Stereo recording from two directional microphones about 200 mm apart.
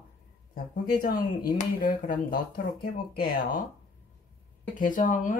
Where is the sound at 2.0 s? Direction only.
45° left (ahead or behind).